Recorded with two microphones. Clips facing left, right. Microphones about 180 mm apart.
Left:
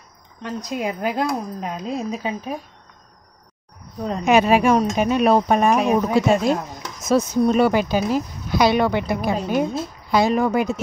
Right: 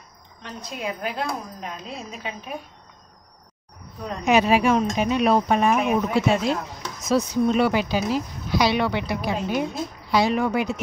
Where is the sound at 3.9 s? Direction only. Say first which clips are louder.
Left 6 dB; 30° left (ahead or behind).